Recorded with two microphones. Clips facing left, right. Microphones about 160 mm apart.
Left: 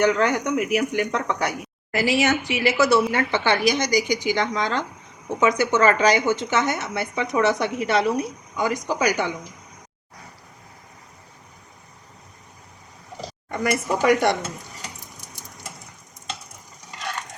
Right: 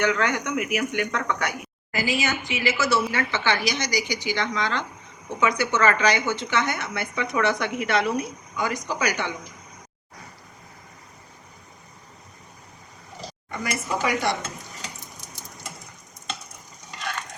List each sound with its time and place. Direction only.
0.0 s speech: 35° left (ahead or behind)
1.9 s a woman's voice: 75° left (ahead or behind); by 9.3 s 40° left (ahead or behind)
13.5 s a woman's voice: 50° left (ahead or behind)